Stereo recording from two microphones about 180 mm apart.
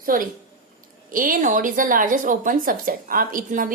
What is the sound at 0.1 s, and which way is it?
A woman's voice, 50° right (ahead or behind).